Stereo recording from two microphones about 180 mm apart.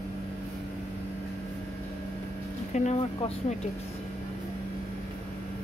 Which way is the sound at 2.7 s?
40° left (ahead or behind).